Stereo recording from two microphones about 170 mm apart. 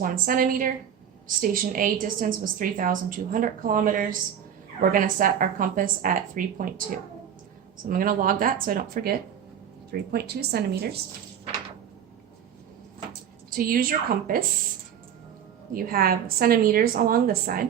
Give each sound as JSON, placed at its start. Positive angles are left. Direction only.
{"t": 0.0, "sound": "a woman's voice", "side_deg": -55}
{"t": 7.9, "sound": "a woman's voice", "side_deg": -55}
{"t": 13.6, "sound": "a woman's voice", "side_deg": -60}
{"t": 15.7, "sound": "a woman's voice", "side_deg": -60}